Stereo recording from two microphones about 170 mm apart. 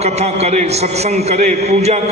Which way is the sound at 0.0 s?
40° right (ahead or behind).